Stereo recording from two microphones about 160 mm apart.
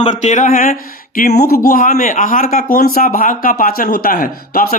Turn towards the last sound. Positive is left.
turn(degrees=65)  # may be behind; listen again after turning